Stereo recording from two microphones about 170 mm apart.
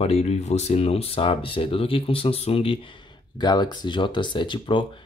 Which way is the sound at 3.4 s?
25° left (ahead or behind).